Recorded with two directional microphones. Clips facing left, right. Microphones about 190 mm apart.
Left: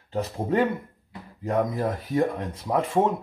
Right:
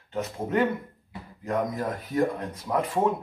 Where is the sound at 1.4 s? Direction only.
30° left (ahead or behind).